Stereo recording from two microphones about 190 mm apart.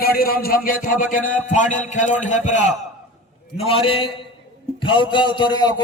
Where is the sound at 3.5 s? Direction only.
30° left (ahead or behind).